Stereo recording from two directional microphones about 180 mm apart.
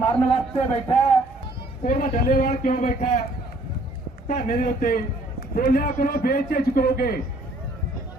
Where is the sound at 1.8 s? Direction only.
50° left (ahead or behind).